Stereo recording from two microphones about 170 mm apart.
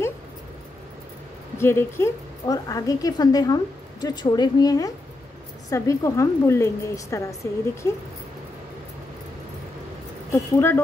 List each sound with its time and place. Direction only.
1.6 s a woman's voice: 15° left (ahead or behind)
10.3 s a woman's voice: 15° left (ahead or behind)